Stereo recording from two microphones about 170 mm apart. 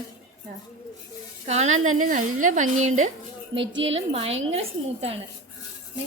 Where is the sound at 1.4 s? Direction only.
40° right (ahead or behind).